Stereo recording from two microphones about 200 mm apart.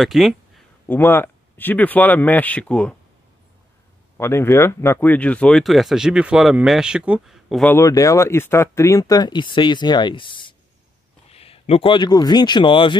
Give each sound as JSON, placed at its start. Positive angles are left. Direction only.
{"t": 0.0, "sound": "speech", "side_deg": 0}
{"t": 0.8, "sound": "speech", "side_deg": 10}
{"t": 4.2, "sound": "speech", "side_deg": 10}
{"t": 7.7, "sound": "speech", "side_deg": 15}